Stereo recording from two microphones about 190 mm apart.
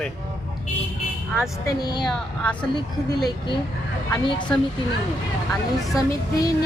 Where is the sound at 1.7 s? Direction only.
20° left (ahead or behind).